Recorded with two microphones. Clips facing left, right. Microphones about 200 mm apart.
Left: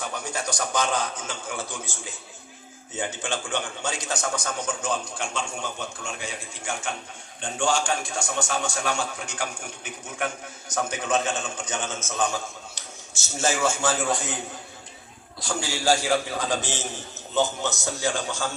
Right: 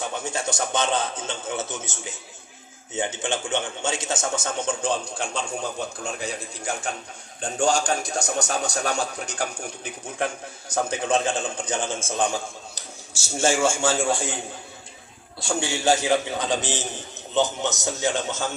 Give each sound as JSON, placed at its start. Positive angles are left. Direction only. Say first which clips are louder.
{"t": 0.1, "sound": "a man's voice", "louder": "right 2 dB", "side_deg": -25}